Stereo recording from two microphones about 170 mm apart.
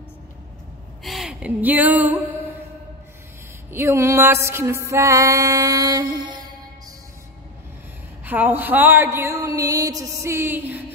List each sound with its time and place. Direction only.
1.0 s a sound: centre (ahead or behind)
3.7 s music: 15° right (ahead or behind)
8.3 s music: 10° right (ahead or behind)